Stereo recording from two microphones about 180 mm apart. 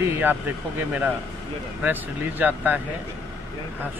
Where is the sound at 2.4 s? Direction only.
10° right (ahead or behind).